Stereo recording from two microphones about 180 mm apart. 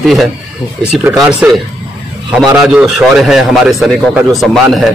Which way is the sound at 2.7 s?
Centre (ahead or behind).